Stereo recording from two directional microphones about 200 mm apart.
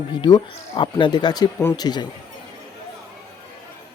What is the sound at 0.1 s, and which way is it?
Speech, 20° left (ahead or behind).